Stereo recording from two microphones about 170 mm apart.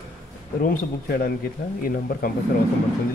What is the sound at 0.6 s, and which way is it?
Speech, 55° left (ahead or behind).